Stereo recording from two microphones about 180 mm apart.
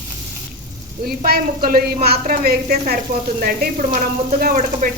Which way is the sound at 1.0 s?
55° right (ahead or behind).